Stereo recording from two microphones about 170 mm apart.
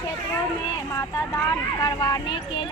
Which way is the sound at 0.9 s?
20° left (ahead or behind).